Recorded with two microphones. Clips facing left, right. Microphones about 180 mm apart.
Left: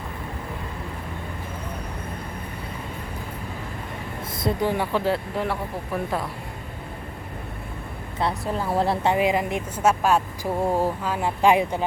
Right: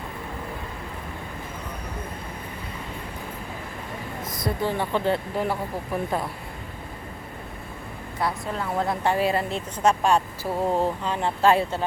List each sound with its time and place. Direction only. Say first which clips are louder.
4.4 s speech: left 3 dB; 25° left (ahead or behind)
4.9 s speech: even; 5° left (ahead or behind)
8.7 s speech: left 2 dB; 30° left (ahead or behind)
9.1 s speech: left 2 dB; 15° left (ahead or behind)